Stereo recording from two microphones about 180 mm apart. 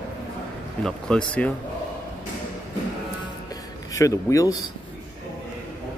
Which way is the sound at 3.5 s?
20° left (ahead or behind).